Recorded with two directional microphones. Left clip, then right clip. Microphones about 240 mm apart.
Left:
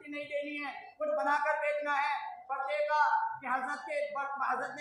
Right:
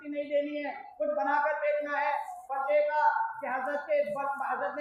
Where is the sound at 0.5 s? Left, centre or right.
Left.